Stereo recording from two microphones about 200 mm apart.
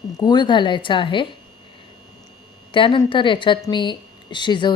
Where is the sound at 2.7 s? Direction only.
25° left (ahead or behind).